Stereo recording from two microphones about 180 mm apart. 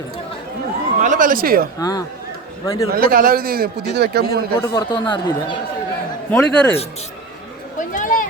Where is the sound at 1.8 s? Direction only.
20° left (ahead or behind).